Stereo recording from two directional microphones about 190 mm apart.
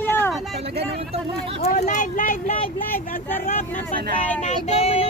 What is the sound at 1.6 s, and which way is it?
Speech, 40° left (ahead or behind).